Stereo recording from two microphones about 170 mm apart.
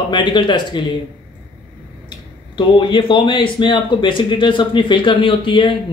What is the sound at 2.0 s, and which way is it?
Speech, 30° left (ahead or behind).